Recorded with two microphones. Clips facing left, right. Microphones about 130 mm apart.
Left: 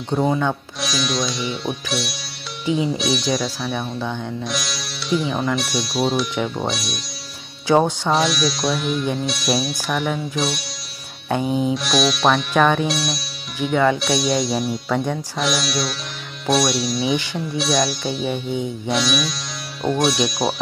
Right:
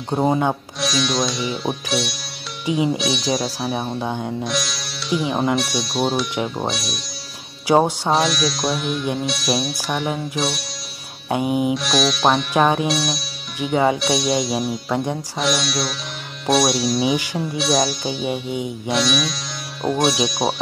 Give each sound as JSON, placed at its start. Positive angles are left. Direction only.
{"t": 0.1, "sound": "speech", "side_deg": -25}
{"t": 0.7, "sound": "speech", "side_deg": 0}
{"t": 3.6, "sound": "speech", "side_deg": -30}
{"t": 4.5, "sound": "sitar", "side_deg": 0}
{"t": 5.3, "sound": "speech", "side_deg": -25}
{"t": 5.6, "sound": "speech", "side_deg": 0}
{"t": 11.2, "sound": "music", "side_deg": -15}
{"t": 11.7, "sound": "speech", "side_deg": 0}
{"t": 13.7, "sound": "speech", "side_deg": -25}
{"t": 13.9, "sound": "speech", "side_deg": 0}